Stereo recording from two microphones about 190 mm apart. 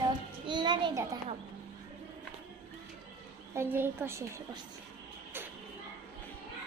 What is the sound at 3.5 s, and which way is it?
Speech, 10° right (ahead or behind).